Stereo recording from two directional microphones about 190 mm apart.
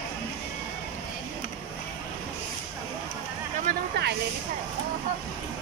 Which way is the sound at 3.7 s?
60° right (ahead or behind).